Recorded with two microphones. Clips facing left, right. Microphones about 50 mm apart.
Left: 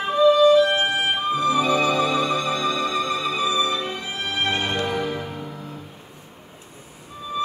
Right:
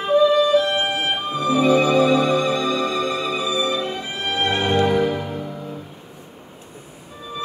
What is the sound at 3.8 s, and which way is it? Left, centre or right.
Music, right.